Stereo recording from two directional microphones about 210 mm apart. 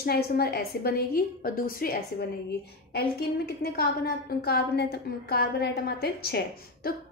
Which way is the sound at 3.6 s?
50° left (ahead or behind).